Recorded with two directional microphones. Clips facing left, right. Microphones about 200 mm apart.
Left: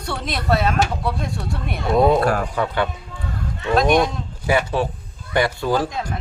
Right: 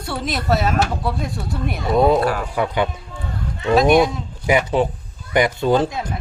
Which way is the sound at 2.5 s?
15° right (ahead or behind).